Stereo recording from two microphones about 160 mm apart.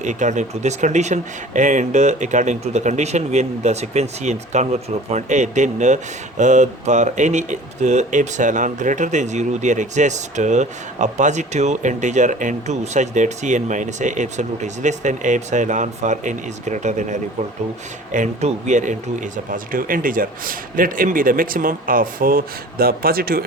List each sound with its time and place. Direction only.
0.0 s speech: 50° right (ahead or behind); by 23.5 s 70° right (ahead or behind)